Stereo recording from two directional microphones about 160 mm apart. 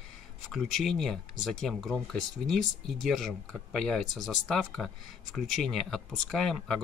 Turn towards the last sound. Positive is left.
turn(degrees=5)  # may be behind; listen again after turning